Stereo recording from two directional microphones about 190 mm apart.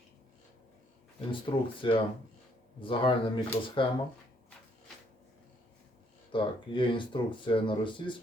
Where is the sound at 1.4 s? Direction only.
25° left (ahead or behind).